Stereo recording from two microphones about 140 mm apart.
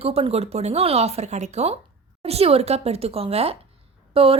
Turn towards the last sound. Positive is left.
turn(degrees=-40)  # may be behind; listen again after turning